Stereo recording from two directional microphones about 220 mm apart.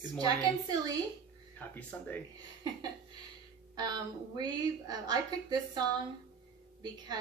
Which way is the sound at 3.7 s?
20° right (ahead or behind).